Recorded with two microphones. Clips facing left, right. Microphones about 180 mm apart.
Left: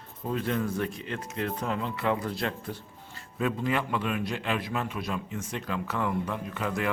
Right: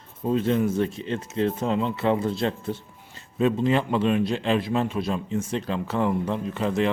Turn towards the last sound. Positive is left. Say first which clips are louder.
# right 7 dB
turn(degrees=-25)  # may be behind; listen again after turning